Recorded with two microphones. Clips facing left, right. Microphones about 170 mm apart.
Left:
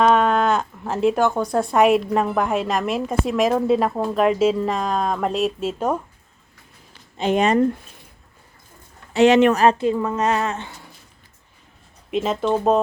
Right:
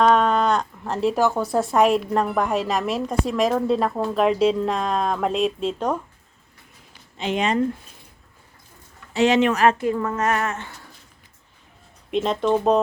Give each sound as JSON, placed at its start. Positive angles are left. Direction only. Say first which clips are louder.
{"t": 0.0, "sound": "speech", "louder": "left 1 dB", "side_deg": 5}
{"t": 7.2, "sound": "speech", "louder": "left 5 dB", "side_deg": 45}
{"t": 9.1, "sound": "speech", "louder": "left 4 dB", "side_deg": 65}
{"t": 9.5, "sound": "a woman's voice", "louder": "left 2 dB", "side_deg": 30}
{"t": 12.1, "sound": "speech", "louder": "even", "side_deg": 5}